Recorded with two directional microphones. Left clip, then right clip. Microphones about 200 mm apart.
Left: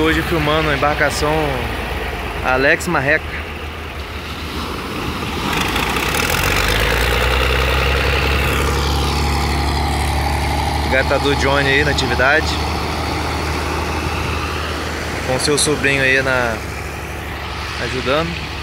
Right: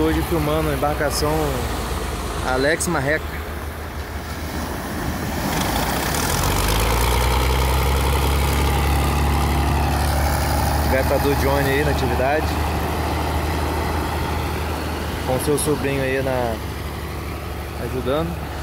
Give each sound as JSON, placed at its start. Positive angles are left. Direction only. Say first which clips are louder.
{"t": 0.0, "sound": "speech", "louder": "left 4 dB", "side_deg": 0}
{"t": 2.5, "sound": "speech", "louder": "left 5 dB", "side_deg": 0}
{"t": 6.1, "sound": "vehicle", "louder": "left 5 dB", "side_deg": -55}
{"t": 9.0, "sound": "vehicle", "louder": "left 3 dB", "side_deg": -15}
{"t": 10.9, "sound": "speech", "louder": "left 4 dB", "side_deg": 0}
{"t": 15.4, "sound": "speech", "louder": "left 7 dB", "side_deg": -5}